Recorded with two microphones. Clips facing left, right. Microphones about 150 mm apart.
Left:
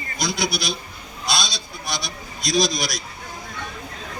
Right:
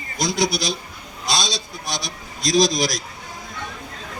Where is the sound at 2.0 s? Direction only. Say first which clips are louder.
Right 3 dB; 90° right.